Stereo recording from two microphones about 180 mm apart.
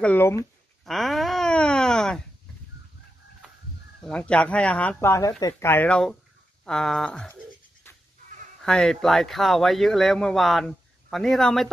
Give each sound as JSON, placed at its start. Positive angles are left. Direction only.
{"t": 0.0, "sound": "speech", "side_deg": 10}
{"t": 0.8, "sound": "wail", "side_deg": 0}
{"t": 4.1, "sound": "speech", "side_deg": 5}
{"t": 8.6, "sound": "speech", "side_deg": 5}